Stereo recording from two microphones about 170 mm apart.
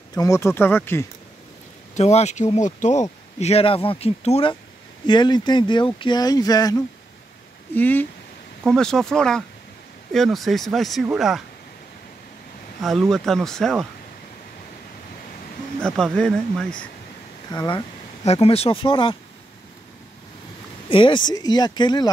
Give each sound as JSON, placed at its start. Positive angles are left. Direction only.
{"t": 0.1, "sound": "speech", "side_deg": 20}
{"t": 2.0, "sound": "speech", "side_deg": 40}
{"t": 7.7, "sound": "speech", "side_deg": 10}
{"t": 12.8, "sound": "speech", "side_deg": 0}
{"t": 15.8, "sound": "speech", "side_deg": 5}
{"t": 17.5, "sound": "speech", "side_deg": 25}
{"t": 18.2, "sound": "speech", "side_deg": 40}
{"t": 20.9, "sound": "speech", "side_deg": 30}